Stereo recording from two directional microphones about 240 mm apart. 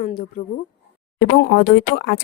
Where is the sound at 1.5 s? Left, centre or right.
Left.